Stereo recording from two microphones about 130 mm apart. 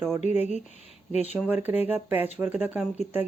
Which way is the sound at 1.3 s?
15° right (ahead or behind).